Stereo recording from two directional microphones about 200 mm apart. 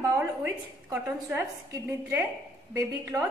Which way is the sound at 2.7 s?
15° right (ahead or behind).